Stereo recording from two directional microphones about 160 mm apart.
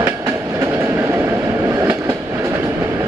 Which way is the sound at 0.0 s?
15° right (ahead or behind).